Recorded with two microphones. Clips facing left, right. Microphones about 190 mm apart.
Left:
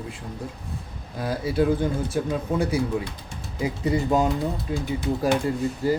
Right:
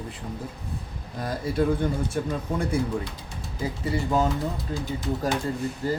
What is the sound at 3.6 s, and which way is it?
Speech, 15° left (ahead or behind).